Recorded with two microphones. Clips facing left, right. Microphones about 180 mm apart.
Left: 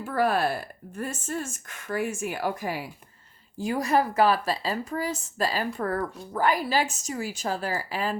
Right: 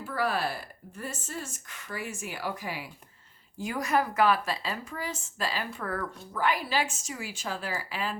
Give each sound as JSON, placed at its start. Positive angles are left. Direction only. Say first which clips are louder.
{"t": 0.1, "sound": "speech", "louder": "left 6 dB", "side_deg": 50}
{"t": 3.6, "sound": "a woman's voice", "louder": "left 4 dB", "side_deg": 30}